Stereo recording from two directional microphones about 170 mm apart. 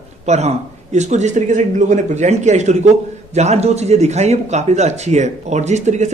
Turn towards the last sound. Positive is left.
turn(degrees=-45)  # may be behind; listen again after turning